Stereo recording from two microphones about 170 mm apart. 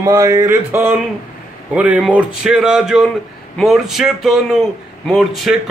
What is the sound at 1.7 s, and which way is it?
Speech, 5° right (ahead or behind).